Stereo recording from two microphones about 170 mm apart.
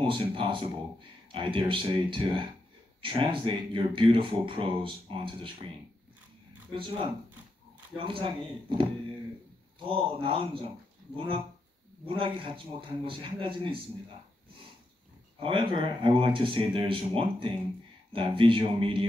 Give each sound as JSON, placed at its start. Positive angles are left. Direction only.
{"t": 0.0, "sound": "speech", "side_deg": -30}
{"t": 6.7, "sound": "speech", "side_deg": -30}
{"t": 9.8, "sound": "speech", "side_deg": -30}
{"t": 15.4, "sound": "speech", "side_deg": -30}